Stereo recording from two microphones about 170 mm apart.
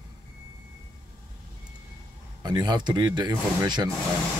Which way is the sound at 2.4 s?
25° right (ahead or behind).